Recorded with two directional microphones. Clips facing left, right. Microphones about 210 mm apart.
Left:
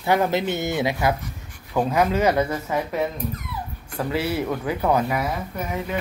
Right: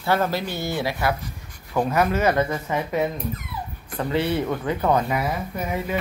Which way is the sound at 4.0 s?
5° left (ahead or behind).